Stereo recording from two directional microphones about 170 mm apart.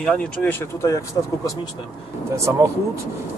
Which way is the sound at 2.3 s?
15° right (ahead or behind).